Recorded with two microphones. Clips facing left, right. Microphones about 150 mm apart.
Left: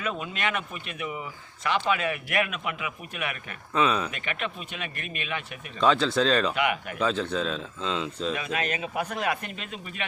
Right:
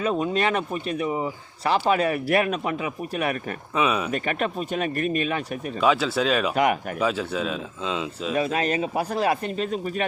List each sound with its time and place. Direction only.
0.0 s speech: 35° right (ahead or behind)
3.8 s speech: 10° right (ahead or behind)
4.1 s speech: 40° right (ahead or behind)
5.8 s speech: 10° right (ahead or behind)
8.4 s speech: 35° right (ahead or behind)